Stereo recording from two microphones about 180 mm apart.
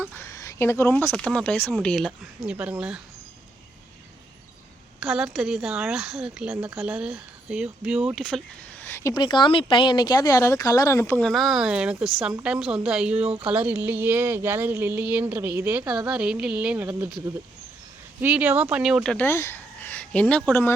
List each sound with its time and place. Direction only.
0.0 s speech: 15° left (ahead or behind); by 3.0 s 5° right (ahead or behind)
4.9 s speech: 5° right (ahead or behind)
9.1 s speech: 25° left (ahead or behind)
11.2 s speech: centre (ahead or behind)
13.1 s speech: 35° right (ahead or behind)
13.5 s speech: 10° right (ahead or behind)
19.1 s speech: 10° left (ahead or behind)